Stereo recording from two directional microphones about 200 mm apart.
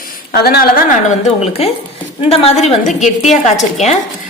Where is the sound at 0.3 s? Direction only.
50° left (ahead or behind).